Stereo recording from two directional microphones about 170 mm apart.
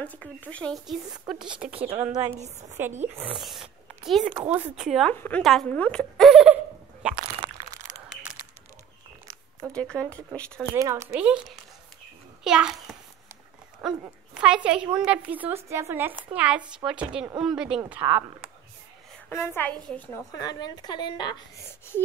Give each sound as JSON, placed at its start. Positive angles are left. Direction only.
{"t": 0.0, "sound": "speech", "side_deg": 10}
{"t": 1.6, "sound": "a woman's voice", "side_deg": -10}
{"t": 2.0, "sound": "a woman's voice", "side_deg": -20}
{"t": 3.3, "sound": "speech", "side_deg": 0}
{"t": 5.1, "sound": "speech", "side_deg": 10}
{"t": 5.4, "sound": "speech", "side_deg": 0}
{"t": 7.2, "sound": "crunch", "side_deg": -30}
{"t": 9.7, "sound": "speech", "side_deg": 5}
{"t": 10.7, "sound": "a woman's voice", "side_deg": -15}
{"t": 11.1, "sound": "a woman's voice", "side_deg": -5}
{"t": 19.2, "sound": "speech", "side_deg": 15}
{"t": 20.3, "sound": "a woman's voice", "side_deg": 25}